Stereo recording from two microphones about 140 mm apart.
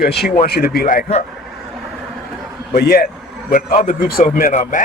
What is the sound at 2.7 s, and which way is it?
A man's voice, 90° left.